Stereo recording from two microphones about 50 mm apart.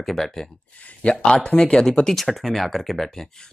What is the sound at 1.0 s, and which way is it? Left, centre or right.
Speech, centre.